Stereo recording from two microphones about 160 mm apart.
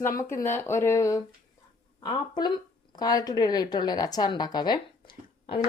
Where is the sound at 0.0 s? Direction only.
15° left (ahead or behind).